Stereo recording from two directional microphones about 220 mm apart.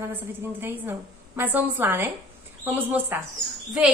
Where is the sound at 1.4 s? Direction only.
10° right (ahead or behind).